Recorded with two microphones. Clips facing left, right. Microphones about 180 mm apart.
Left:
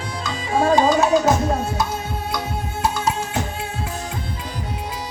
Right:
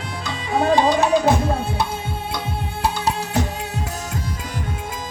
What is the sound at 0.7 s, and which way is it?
Music, 35° left (ahead or behind).